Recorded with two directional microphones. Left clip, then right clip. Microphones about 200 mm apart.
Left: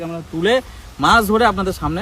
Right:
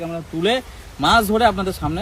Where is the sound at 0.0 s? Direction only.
Centre (ahead or behind).